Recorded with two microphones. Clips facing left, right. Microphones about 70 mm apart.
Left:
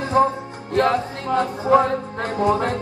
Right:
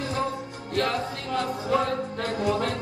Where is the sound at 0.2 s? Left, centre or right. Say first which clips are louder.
Left 13 dB; left.